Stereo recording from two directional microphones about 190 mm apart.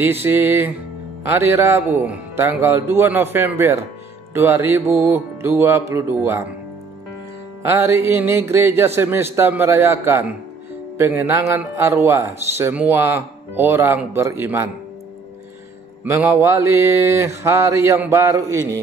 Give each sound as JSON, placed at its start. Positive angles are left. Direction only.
{"t": 0.0, "sound": "speech", "side_deg": -10}
{"t": 7.6, "sound": "speech", "side_deg": -15}
{"t": 16.0, "sound": "speech", "side_deg": -15}